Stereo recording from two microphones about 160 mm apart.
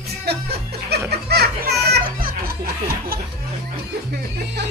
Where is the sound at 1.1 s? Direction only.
90° right; by 3.2 s 65° right (ahead or behind).